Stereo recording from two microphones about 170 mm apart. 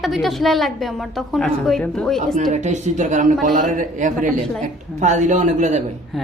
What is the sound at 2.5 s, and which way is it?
A man's voice, 45° right (ahead or behind).